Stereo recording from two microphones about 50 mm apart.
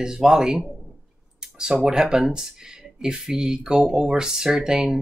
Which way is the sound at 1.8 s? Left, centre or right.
Centre.